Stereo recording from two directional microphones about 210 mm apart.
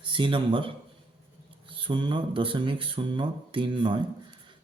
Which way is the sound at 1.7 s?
25° right (ahead or behind).